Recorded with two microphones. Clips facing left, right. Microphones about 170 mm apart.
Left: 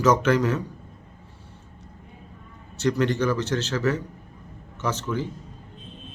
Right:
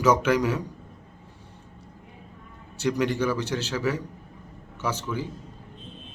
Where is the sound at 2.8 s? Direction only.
10° right (ahead or behind).